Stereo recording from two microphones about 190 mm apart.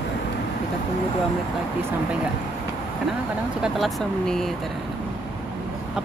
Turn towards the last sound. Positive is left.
turn(degrees=0)  # may be behind; listen again after turning